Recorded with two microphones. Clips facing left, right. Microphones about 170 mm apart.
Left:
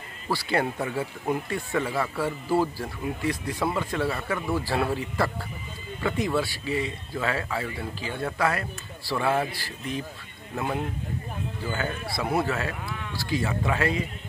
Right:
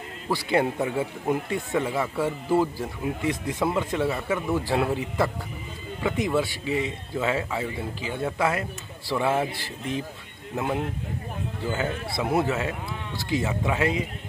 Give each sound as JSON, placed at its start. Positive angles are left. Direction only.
{"t": 0.3, "sound": "speech", "side_deg": -20}